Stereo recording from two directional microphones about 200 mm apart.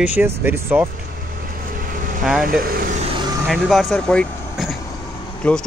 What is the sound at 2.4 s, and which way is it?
Speech, 45° right (ahead or behind).